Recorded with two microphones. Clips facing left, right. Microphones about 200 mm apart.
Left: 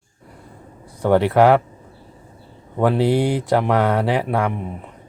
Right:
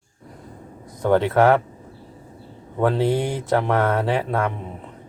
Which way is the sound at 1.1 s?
15° left (ahead or behind).